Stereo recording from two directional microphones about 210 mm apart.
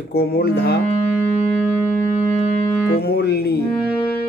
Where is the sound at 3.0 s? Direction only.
50° left (ahead or behind).